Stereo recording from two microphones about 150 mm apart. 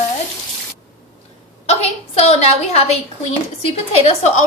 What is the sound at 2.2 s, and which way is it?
A woman's voice, 45° left (ahead or behind).